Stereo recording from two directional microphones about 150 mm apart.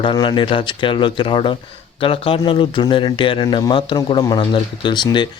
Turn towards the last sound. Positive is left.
turn(degrees=30)  # may be behind; listen again after turning